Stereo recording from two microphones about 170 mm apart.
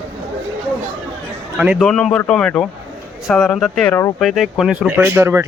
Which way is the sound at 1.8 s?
5° left (ahead or behind).